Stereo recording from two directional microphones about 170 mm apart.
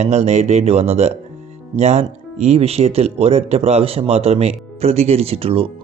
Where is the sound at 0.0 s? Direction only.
40° right (ahead or behind).